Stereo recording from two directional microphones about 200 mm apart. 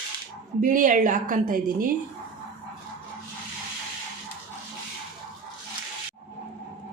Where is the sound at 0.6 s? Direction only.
40° right (ahead or behind).